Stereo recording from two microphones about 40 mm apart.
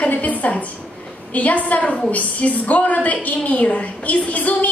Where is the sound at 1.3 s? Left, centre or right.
Left.